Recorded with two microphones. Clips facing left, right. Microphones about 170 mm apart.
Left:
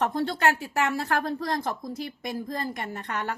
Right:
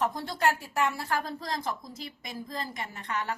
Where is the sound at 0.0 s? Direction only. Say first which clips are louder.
Left 3 dB; 65° left (ahead or behind).